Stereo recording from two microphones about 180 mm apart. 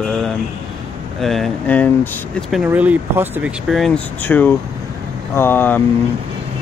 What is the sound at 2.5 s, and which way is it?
Speech, 5° right (ahead or behind).